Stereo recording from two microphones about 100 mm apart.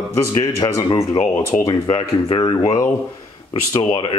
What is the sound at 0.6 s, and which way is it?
Speech, 55° left (ahead or behind).